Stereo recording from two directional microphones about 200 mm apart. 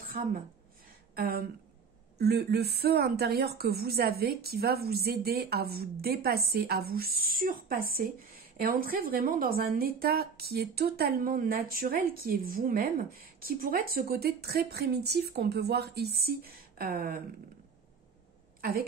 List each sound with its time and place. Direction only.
0.0 s a sound: 45° right (ahead or behind)
1.1 s a woman's voice: 45° right (ahead or behind)
18.6 s a woman's voice: 50° right (ahead or behind)